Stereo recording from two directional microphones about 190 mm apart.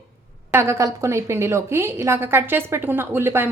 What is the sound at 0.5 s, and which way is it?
A woman's voice, 15° right (ahead or behind).